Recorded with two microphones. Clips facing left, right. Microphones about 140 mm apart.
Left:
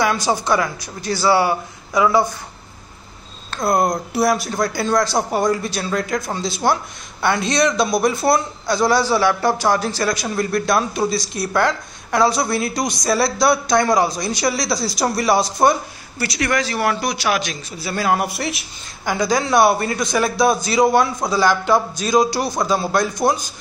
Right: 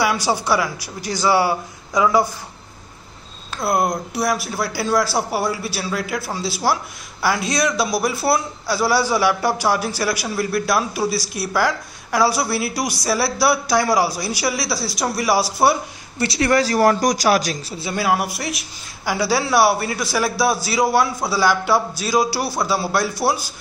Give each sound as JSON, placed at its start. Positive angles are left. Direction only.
{"t": 0.0, "sound": "a man's voice", "side_deg": -10}
{"t": 3.5, "sound": "a man's voice", "side_deg": -5}
{"t": 16.2, "sound": "speech", "side_deg": -30}
{"t": 17.9, "sound": "a man's voice", "side_deg": -5}